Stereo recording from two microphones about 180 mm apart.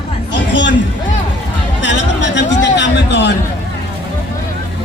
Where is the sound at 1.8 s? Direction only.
85° left.